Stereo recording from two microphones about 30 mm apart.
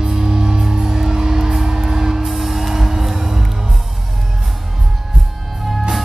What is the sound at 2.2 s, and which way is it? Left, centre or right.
Music, centre.